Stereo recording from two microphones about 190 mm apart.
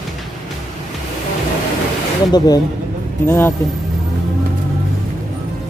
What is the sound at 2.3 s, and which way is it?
Speech, 20° left (ahead or behind).